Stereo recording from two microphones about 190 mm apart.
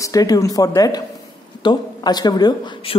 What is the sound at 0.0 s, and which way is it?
A woman's voice, 20° left (ahead or behind).